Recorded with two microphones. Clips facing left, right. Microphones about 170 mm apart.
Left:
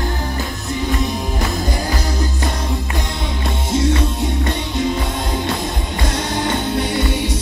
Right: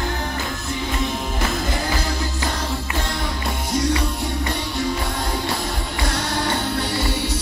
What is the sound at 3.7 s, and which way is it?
Music, 25° left (ahead or behind).